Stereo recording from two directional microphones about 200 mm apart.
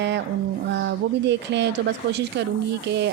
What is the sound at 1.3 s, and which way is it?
Speech, 60° right (ahead or behind).